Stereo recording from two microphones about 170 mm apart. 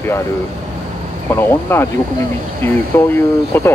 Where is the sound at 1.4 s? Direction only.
15° left (ahead or behind).